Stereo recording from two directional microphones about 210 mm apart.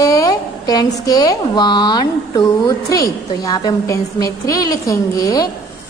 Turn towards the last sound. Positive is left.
turn(degrees=15)  # may be behind; listen again after turning